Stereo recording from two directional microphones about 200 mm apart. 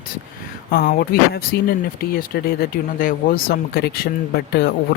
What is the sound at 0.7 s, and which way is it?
Speech, 45° left (ahead or behind).